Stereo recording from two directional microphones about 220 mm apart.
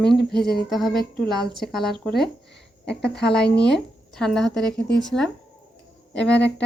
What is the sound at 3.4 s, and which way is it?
Speech, 50° left (ahead or behind).